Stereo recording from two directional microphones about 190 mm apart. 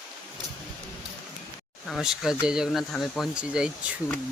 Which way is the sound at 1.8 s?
Centre (ahead or behind).